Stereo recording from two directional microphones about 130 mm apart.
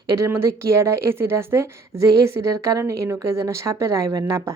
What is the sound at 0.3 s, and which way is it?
A woman's voice, 20° right (ahead or behind).